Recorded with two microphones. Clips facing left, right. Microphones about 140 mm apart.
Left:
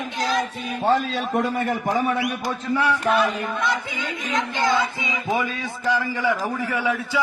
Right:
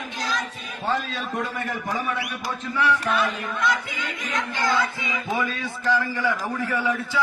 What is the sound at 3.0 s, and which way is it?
Music, 30° left (ahead or behind).